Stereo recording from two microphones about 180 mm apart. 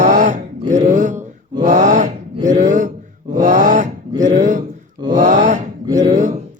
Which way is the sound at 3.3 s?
45° right (ahead or behind).